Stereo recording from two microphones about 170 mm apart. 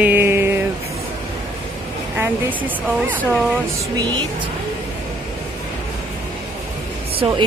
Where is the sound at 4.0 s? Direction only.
25° right (ahead or behind).